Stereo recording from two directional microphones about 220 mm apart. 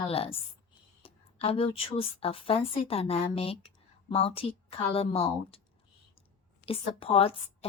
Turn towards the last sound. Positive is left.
turn(degrees=25)  # may be behind; listen again after turning